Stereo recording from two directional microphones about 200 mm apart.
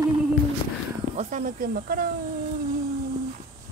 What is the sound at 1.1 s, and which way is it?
Speech, 40° right (ahead or behind).